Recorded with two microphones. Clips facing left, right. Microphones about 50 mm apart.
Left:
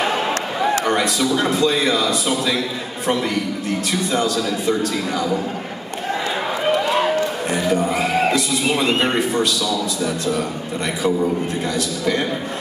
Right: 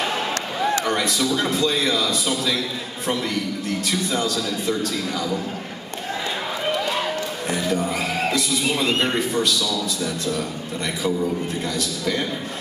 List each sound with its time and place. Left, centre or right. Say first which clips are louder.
0.8 s a man's voice: left 3 dB; centre
6.6 s run: left 6 dB; centre
7.8 s a man's voice: left 5 dB; centre